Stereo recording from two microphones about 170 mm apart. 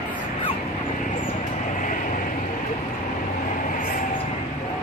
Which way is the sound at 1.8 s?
50° left (ahead or behind).